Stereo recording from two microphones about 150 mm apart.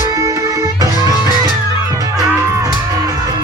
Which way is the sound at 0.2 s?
25° right (ahead or behind).